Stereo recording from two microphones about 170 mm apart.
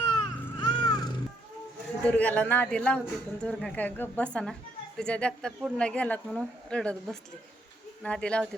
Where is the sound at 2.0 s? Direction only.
10° left (ahead or behind).